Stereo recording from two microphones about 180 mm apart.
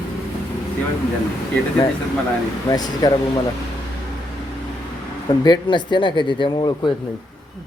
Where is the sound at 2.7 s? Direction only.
20° left (ahead or behind).